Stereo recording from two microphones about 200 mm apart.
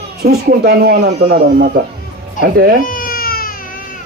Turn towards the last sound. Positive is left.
turn(degrees=45)  # may be behind; listen again after turning